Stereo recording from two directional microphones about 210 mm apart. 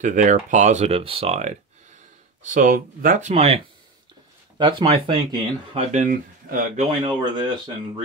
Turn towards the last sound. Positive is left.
turn(degrees=-20)  # may be behind; listen again after turning